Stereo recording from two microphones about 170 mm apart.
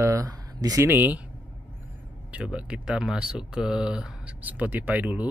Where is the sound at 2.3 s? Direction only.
5° right (ahead or behind).